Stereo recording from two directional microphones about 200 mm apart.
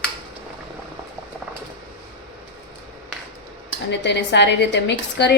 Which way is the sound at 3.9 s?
60° left (ahead or behind).